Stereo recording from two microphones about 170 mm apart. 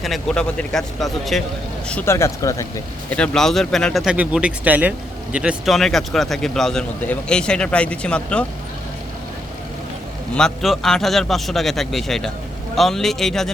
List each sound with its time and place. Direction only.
0.0 s speech: centre (ahead or behind)
1.9 s speech: 10° left (ahead or behind)
3.2 s speech: centre (ahead or behind)
10.3 s speech: centre (ahead or behind)